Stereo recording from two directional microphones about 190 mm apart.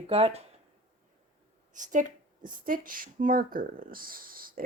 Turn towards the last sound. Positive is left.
turn(degrees=-50)  # may be behind; listen again after turning